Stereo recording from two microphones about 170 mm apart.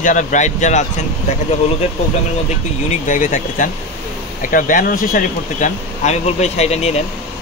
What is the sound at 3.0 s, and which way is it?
Speech, 50° left (ahead or behind).